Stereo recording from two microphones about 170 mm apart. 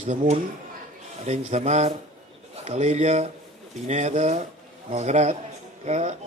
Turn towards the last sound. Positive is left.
turn(degrees=-40)  # may be behind; listen again after turning